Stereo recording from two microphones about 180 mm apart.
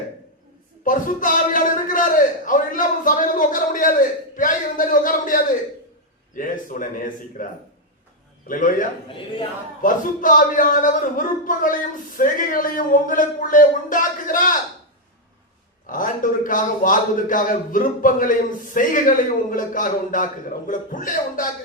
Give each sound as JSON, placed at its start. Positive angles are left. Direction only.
{"t": 0.9, "sound": "a man's voice", "side_deg": 50}
{"t": 8.4, "sound": "a man's voice", "side_deg": 45}
{"t": 9.0, "sound": "a man's voice", "side_deg": 30}
{"t": 9.8, "sound": "a man's voice", "side_deg": 50}
{"t": 15.9, "sound": "a man's voice", "side_deg": 50}